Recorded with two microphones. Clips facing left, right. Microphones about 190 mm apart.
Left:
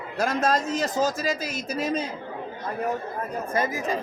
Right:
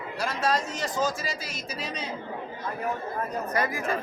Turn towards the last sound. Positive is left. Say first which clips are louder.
# left 2 dB
turn(degrees=20)  # may be behind; listen again after turning